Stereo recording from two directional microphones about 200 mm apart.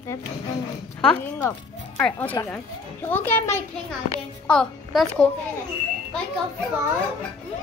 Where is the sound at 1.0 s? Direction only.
5° left (ahead or behind).